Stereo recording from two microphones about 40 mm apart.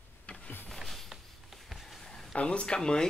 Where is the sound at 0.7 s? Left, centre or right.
Centre.